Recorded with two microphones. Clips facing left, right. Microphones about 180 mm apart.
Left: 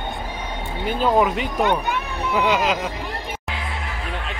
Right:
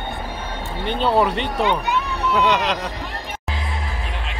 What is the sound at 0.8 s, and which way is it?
Speech, 5° left (ahead or behind).